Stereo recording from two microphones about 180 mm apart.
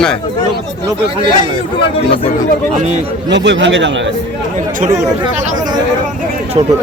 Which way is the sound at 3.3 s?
80° right.